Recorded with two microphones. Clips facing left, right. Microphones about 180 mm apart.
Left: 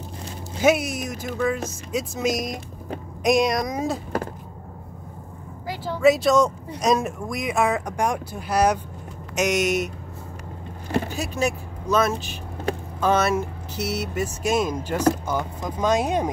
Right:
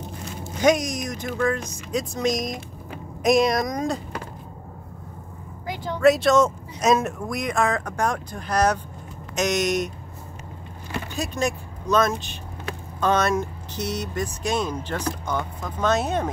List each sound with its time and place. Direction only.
0.6 s speech: 5° left (ahead or behind)
5.7 s speech: 5° left (ahead or behind)
10.9 s vehicle: 35° left (ahead or behind)
11.1 s speech: 5° left (ahead or behind)